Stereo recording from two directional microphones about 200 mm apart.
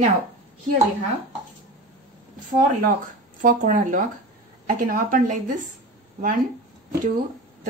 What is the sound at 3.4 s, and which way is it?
A woman's voice, 40° right (ahead or behind).